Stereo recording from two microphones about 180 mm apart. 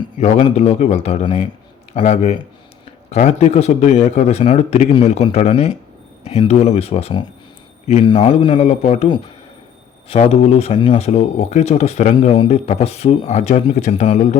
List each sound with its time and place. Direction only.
0.2 s a man's voice: 40° left (ahead or behind)